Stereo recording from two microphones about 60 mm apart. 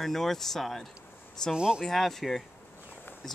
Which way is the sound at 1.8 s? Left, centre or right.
Centre.